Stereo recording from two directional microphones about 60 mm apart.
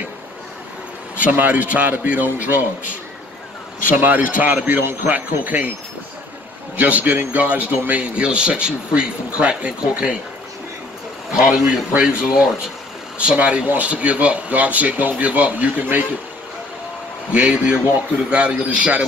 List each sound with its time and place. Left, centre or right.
1.1 s speech: right
3.9 s speech: right
6.8 s speech: right
11.3 s speech: centre
17.3 s speech: centre